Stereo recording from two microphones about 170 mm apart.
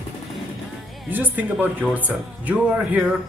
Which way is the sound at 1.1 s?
10° right (ahead or behind).